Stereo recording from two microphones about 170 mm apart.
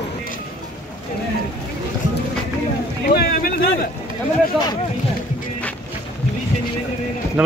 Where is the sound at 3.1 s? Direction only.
65° left (ahead or behind).